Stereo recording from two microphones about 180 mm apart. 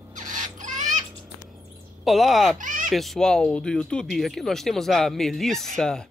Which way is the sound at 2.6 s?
50° right (ahead or behind).